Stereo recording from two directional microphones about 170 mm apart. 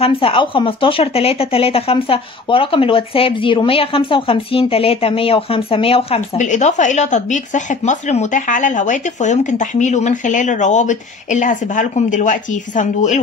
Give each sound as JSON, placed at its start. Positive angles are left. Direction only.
{"t": 0.0, "sound": "speech", "side_deg": 35}